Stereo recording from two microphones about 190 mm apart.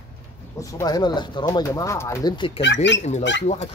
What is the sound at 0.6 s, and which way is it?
Speech, 15° left (ahead or behind).